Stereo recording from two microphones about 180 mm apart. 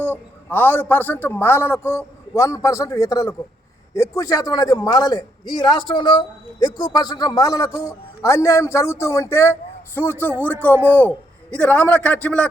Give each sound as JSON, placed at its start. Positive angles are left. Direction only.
{"t": 0.0, "sound": "a man's voice", "side_deg": 10}